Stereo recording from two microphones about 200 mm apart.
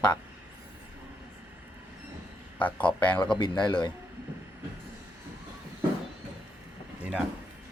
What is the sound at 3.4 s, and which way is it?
Speech, 20° left (ahead or behind).